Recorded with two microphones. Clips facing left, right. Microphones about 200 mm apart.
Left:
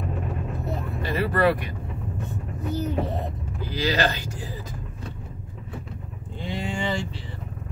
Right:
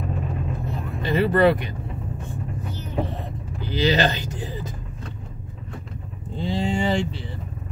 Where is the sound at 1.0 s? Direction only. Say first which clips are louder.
Right 4 dB; 20° right (ahead or behind).